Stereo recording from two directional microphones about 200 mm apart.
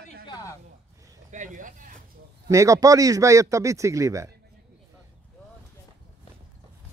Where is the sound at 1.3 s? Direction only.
40° right (ahead or behind).